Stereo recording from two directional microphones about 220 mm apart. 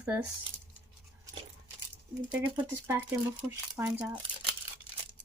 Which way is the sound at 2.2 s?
20° right (ahead or behind).